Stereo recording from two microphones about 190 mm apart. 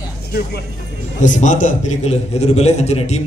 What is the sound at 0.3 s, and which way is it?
Speech, 55° left (ahead or behind).